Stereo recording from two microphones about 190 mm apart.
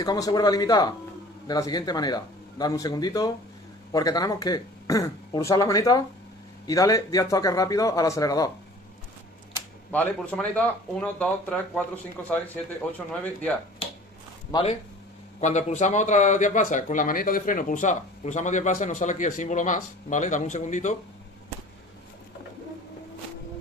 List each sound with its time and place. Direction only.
0.0 s speech: 20° left (ahead or behind)
9.8 s speech: 10° left (ahead or behind)
14.5 s speech: 30° left (ahead or behind)